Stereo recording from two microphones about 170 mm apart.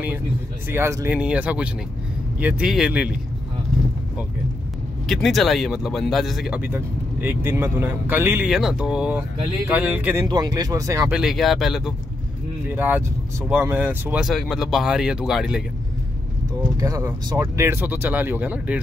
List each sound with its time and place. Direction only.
0.7 s speech: 15° right (ahead or behind)
5.0 s speech: centre (ahead or behind)
10.2 s speech: 25° right (ahead or behind)
11.1 s speech: centre (ahead or behind)
16.7 s speech: 20° right (ahead or behind)